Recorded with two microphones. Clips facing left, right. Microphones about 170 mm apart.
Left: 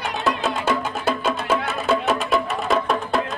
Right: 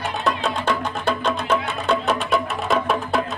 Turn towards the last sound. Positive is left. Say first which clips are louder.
# even
turn(degrees=0)  # may be behind; listen again after turning